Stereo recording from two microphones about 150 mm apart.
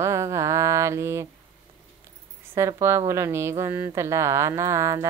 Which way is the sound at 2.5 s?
15° right (ahead or behind).